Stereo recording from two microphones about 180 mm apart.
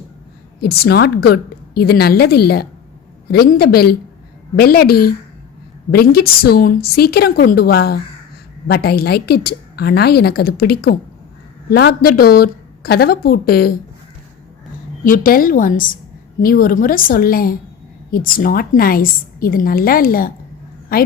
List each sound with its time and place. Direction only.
0.6 s a woman's voice: 60° left (ahead or behind)
15.0 s a woman's voice: 50° left (ahead or behind)